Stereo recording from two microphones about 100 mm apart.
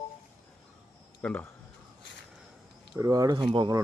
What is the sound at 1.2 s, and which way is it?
Speech, 15° left (ahead or behind).